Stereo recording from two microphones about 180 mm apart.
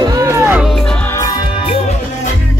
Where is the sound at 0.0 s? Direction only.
20° right (ahead or behind).